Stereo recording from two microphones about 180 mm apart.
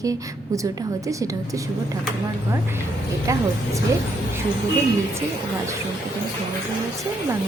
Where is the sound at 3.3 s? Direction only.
15° right (ahead or behind).